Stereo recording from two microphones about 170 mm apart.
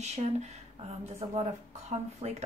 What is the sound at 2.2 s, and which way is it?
Speech, 40° right (ahead or behind).